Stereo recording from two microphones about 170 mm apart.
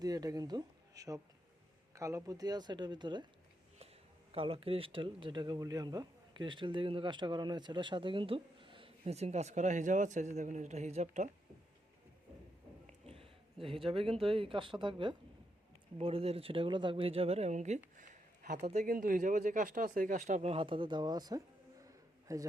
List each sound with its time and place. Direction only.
0.0 s speech: 20° right (ahead or behind)
4.3 s speech: 35° right (ahead or behind)
12.9 s speech: 35° right (ahead or behind)
17.9 s a sound: 50° right (ahead or behind)
18.9 s speech: 50° right (ahead or behind); by 22.4 s 20° right (ahead or behind)